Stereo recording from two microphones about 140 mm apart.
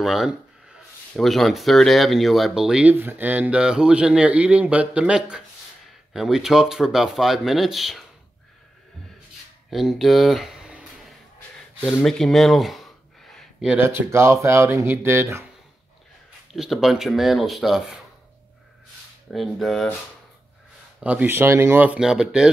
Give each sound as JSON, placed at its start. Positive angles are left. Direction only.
{"t": 0.0, "sound": "speech", "side_deg": 0}
{"t": 9.7, "sound": "a sound", "side_deg": 0}
{"t": 13.7, "sound": "speech", "side_deg": -20}
{"t": 16.5, "sound": "speech", "side_deg": -5}
{"t": 19.3, "sound": "speech", "side_deg": 0}
{"t": 21.0, "sound": "speech", "side_deg": -10}